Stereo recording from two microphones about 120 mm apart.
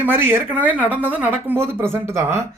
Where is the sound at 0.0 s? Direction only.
20° right (ahead or behind).